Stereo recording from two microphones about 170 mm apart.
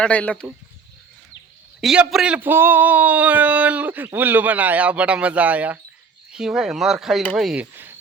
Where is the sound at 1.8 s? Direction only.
Centre (ahead or behind).